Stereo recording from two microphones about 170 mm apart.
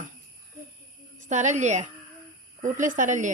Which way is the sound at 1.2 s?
45° right (ahead or behind).